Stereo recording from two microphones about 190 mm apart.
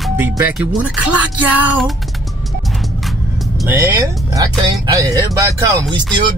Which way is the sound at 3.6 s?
15° right (ahead or behind).